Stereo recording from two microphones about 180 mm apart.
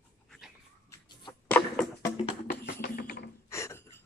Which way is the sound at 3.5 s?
15° left (ahead or behind).